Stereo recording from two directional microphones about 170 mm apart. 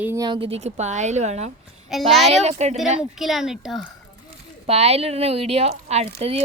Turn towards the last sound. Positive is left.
turn(degrees=-35)  # may be behind; listen again after turning